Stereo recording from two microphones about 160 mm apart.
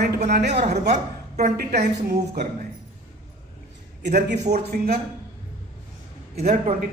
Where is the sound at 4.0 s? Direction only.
90° right.